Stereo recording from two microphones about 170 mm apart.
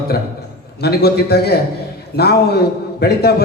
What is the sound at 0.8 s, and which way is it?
A man's voice, 70° left (ahead or behind).